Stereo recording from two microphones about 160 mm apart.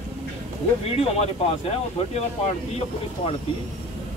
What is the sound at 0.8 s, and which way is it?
Speech, 40° left (ahead or behind).